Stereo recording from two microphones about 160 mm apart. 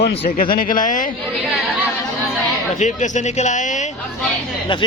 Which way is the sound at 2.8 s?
50° left (ahead or behind).